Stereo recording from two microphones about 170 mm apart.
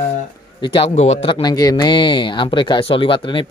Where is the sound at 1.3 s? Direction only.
25° left (ahead or behind).